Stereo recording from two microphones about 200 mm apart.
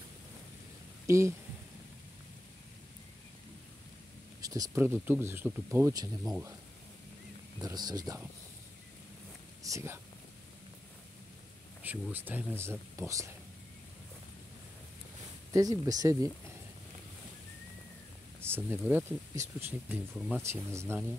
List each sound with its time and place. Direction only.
1.0 s speech: 15° right (ahead or behind)
4.4 s speech: 15° right (ahead or behind)
7.6 s speech: 20° right (ahead or behind)
9.6 s speech: 15° right (ahead or behind)
11.8 s speech: 10° right (ahead or behind)
15.5 s speech: 15° right (ahead or behind)
18.4 s speech: 10° right (ahead or behind)
20.4 s speech: 15° right (ahead or behind)